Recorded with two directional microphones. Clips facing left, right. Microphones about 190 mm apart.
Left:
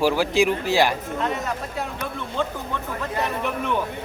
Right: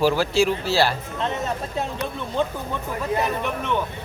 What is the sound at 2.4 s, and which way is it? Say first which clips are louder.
Speech: right 2 dB; 15° right (ahead or behind).